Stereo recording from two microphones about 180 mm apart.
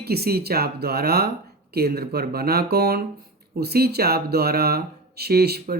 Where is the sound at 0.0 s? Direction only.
60° right (ahead or behind).